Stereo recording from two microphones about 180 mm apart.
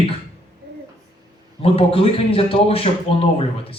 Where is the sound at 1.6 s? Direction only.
30° left (ahead or behind).